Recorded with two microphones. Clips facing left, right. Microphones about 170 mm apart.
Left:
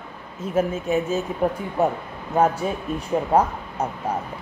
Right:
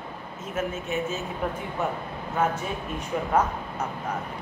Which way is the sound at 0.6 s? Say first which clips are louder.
Left 7 dB; 30° left (ahead or behind).